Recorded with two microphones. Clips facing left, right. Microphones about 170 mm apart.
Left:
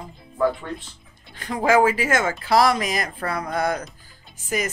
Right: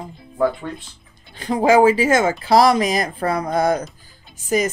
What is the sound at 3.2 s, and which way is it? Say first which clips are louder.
Speech: right 6 dB; 20° right (ahead or behind).